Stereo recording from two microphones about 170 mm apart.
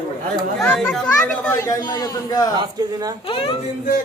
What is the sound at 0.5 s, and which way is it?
Speech, 5° left (ahead or behind).